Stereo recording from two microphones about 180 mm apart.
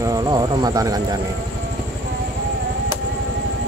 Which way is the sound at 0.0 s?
20° right (ahead or behind).